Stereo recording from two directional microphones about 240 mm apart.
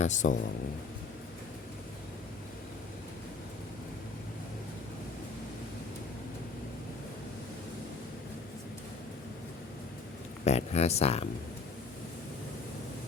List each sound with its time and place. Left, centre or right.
0.0 s speech: left
10.4 s speech: left